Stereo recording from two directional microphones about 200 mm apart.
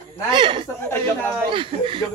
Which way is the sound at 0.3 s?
25° right (ahead or behind).